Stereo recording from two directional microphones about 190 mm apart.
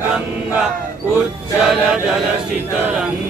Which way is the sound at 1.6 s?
5° right (ahead or behind).